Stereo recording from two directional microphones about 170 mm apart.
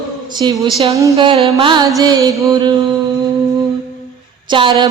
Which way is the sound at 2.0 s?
20° right (ahead or behind).